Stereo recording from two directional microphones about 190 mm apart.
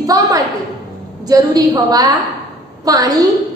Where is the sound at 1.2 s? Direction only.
20° right (ahead or behind).